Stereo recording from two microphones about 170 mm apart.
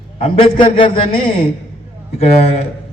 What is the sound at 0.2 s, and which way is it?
A man's voice, 35° left (ahead or behind).